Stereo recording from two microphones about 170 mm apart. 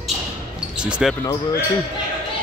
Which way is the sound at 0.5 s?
5° right (ahead or behind).